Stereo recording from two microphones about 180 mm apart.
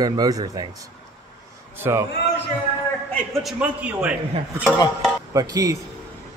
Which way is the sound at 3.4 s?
5° right (ahead or behind).